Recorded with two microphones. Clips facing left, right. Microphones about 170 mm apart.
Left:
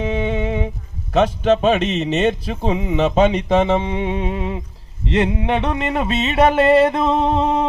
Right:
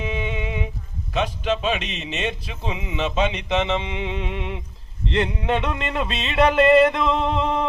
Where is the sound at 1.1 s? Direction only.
45° left (ahead or behind).